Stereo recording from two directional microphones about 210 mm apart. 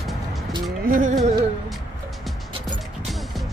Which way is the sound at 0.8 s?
40° right (ahead or behind).